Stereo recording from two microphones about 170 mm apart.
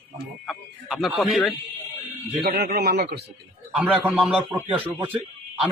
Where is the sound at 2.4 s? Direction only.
65° right (ahead or behind).